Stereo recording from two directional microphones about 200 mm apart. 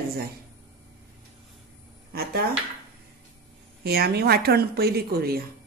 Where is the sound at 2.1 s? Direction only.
50° right (ahead or behind).